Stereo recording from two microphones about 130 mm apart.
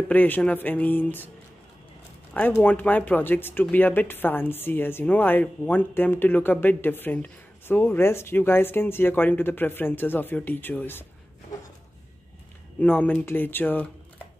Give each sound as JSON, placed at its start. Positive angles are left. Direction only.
{"t": 0.1, "sound": "speech", "side_deg": 15}
{"t": 2.3, "sound": "speech", "side_deg": 15}
{"t": 12.8, "sound": "speech", "side_deg": 15}